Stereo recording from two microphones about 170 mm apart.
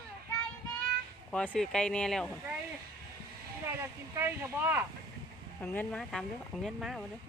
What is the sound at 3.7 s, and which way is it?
Speech, 15° right (ahead or behind).